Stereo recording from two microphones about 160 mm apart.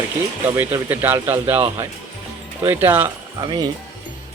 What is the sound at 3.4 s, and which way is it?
Speech, 25° right (ahead or behind).